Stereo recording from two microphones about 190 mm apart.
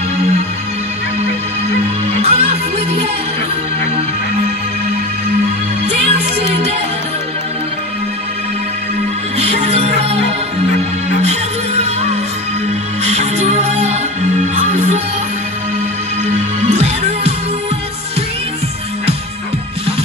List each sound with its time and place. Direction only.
2.2 s music: 35° right (ahead or behind)
5.9 s music: 35° right (ahead or behind)
9.4 s music: 35° right (ahead or behind)
11.2 s music: 35° right (ahead or behind)
16.3 s music: 35° right (ahead or behind)